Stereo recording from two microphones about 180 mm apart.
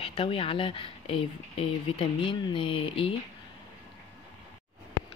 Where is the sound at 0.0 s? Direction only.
30° left (ahead or behind).